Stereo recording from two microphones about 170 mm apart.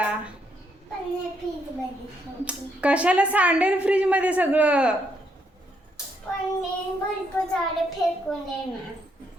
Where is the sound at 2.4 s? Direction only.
5° right (ahead or behind).